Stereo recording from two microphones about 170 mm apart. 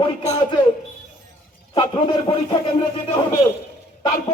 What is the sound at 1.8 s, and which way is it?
Speech, 35° left (ahead or behind).